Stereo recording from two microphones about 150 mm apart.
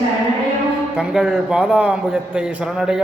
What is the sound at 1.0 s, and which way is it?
A man's voice, 5° right (ahead or behind).